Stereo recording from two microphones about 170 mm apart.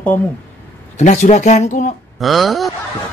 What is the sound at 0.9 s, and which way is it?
Speech, 40° left (ahead or behind).